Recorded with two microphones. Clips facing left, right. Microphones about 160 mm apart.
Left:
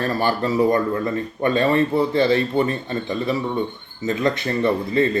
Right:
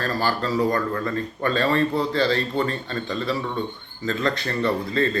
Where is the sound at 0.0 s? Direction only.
20° left (ahead or behind).